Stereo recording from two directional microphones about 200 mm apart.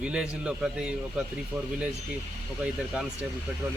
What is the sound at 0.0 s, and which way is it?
Speech, 5° right (ahead or behind).